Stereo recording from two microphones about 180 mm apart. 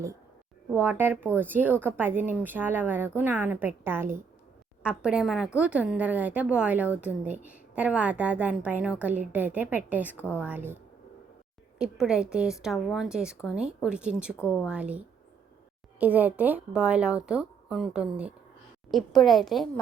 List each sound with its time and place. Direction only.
0.7 s speech: 10° right (ahead or behind)
10.2 s a woman's voice: 10° left (ahead or behind)
10.4 s speech: 10° right (ahead or behind)
11.8 s a woman's voice: 5° right (ahead or behind)